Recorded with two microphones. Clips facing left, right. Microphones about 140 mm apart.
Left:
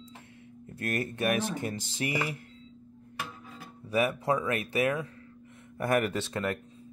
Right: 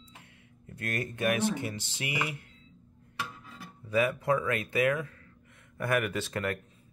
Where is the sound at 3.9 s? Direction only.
25° left (ahead or behind).